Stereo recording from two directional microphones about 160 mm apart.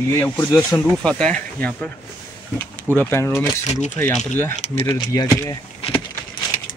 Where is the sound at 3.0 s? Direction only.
15° left (ahead or behind).